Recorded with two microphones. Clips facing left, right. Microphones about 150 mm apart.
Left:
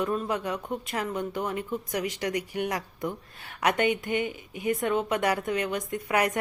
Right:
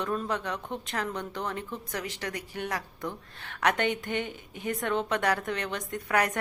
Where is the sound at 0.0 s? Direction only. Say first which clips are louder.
Left 3 dB; 10° left (ahead or behind).